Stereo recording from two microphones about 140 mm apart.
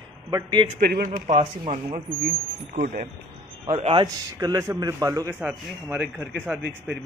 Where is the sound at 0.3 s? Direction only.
30° right (ahead or behind).